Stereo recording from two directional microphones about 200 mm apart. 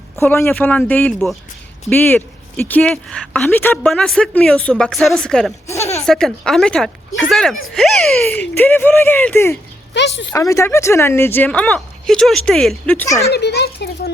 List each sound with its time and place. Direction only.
0.2 s speech: 15° left (ahead or behind)
5.6 s speech: 15° left (ahead or behind)
6.1 s speech: 5° left (ahead or behind)
9.9 s a child's voice: 60° left (ahead or behind)
10.3 s speech: 15° left (ahead or behind)
13.3 s a child's voice: 55° left (ahead or behind)